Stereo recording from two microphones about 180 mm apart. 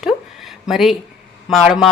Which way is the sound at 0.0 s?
Centre (ahead or behind).